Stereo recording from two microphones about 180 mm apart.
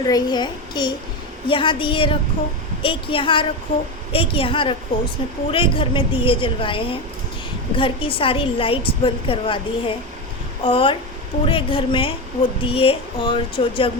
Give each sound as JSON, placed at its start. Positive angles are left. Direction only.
{"t": 0.0, "sound": "a woman's voice", "side_deg": 20}